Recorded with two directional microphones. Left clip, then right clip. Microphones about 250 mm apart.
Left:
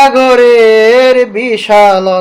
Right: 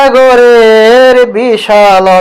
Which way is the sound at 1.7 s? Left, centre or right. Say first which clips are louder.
Right 1 dB; centre.